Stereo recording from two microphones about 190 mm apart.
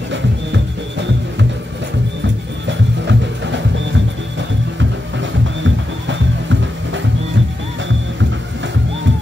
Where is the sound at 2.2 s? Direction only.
75° right (ahead or behind).